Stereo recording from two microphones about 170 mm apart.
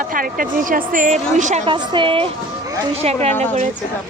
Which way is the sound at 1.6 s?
25° right (ahead or behind).